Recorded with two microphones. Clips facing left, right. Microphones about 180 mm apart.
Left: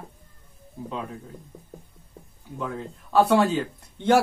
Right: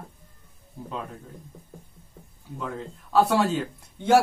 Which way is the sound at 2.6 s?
Centre (ahead or behind).